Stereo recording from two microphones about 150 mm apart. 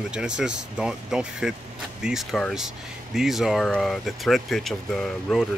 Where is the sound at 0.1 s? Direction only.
5° right (ahead or behind).